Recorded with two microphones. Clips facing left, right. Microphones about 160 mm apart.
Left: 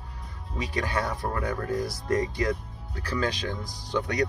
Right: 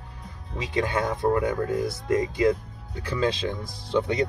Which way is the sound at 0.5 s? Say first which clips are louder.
Right 3 dB; 25° right (ahead or behind).